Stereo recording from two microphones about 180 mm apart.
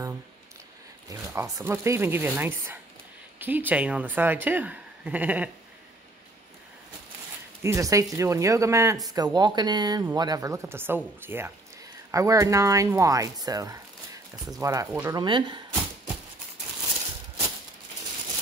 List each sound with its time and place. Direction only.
1.3 s speech: 15° right (ahead or behind)
7.6 s speech: 15° right (ahead or behind)